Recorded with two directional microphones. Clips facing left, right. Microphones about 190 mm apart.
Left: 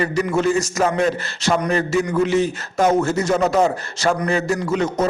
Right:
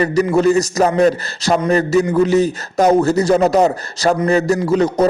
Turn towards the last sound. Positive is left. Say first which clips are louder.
# right 5 dB
turn(degrees=-35)  # may be behind; listen again after turning